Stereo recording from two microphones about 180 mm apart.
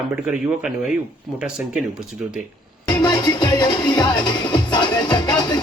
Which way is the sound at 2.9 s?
25° left (ahead or behind).